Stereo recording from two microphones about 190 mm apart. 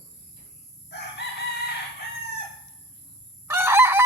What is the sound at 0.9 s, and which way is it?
Chicken, 60° left (ahead or behind).